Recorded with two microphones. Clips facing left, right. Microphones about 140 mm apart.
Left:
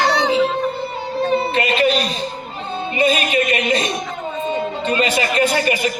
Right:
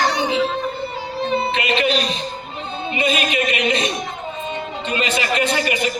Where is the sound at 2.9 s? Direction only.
35° left (ahead or behind).